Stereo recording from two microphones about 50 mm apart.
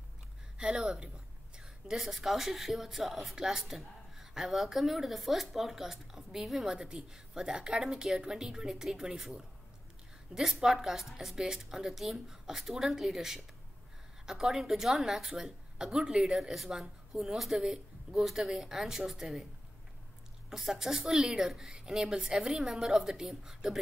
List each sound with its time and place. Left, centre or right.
0.6 s a sound: centre
2.0 s speech: centre
10.3 s speech: centre
16.3 s speech: centre
20.4 s speech: centre